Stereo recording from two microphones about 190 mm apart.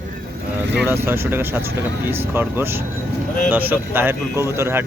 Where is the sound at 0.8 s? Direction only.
10° right (ahead or behind).